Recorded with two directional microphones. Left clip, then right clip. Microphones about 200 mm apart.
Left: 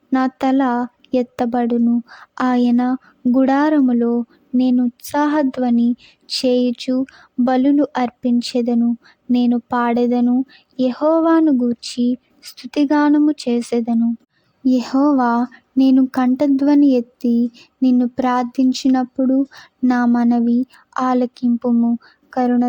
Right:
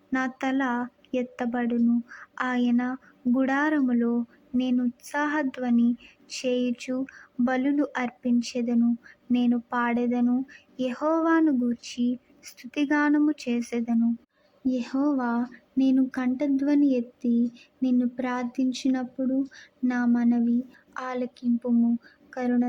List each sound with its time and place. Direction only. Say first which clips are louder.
0.1 s speech: left 10 dB; 45° left (ahead or behind)
6.2 s a sound: left 10 dB; 45° left (ahead or behind)
6.7 s a woman's voice: left 10 dB; 40° left (ahead or behind)